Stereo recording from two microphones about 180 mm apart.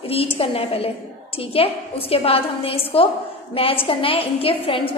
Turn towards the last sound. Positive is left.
turn(degrees=30)  # may be behind; listen again after turning